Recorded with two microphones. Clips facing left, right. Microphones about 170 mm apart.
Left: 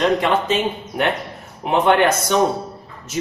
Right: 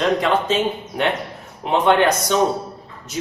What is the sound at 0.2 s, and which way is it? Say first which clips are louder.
Speech: even; 5° left (ahead or behind).